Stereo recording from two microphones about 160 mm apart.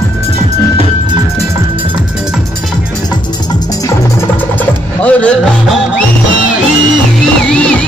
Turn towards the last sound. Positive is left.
turn(degrees=5)  # may be behind; listen again after turning